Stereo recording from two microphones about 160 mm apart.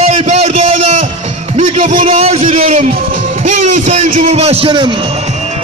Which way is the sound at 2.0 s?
35° right (ahead or behind).